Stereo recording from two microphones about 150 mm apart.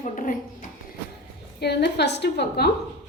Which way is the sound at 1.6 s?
90° left.